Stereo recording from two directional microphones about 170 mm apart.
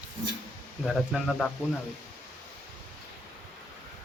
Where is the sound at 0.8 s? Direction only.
Centre (ahead or behind).